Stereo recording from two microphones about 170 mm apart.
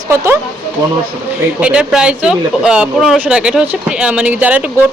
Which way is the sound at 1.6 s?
5° right (ahead or behind).